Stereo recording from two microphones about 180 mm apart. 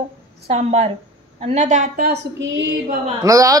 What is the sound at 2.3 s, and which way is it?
Female singing, 90° right.